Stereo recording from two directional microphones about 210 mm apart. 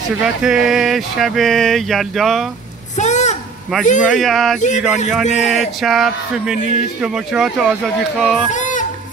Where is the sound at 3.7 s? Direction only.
Centre (ahead or behind).